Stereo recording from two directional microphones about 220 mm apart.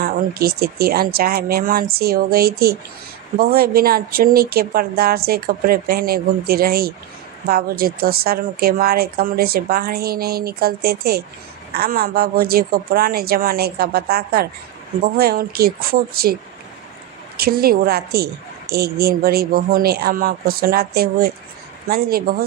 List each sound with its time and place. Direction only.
0.0 s a woman's voice: 45° right (ahead or behind)
17.4 s a woman's voice: 45° right (ahead or behind)